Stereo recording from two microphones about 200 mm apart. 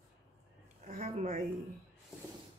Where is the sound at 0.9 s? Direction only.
40° right (ahead or behind).